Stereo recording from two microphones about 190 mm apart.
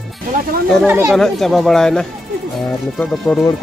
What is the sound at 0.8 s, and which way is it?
Speech, 10° right (ahead or behind).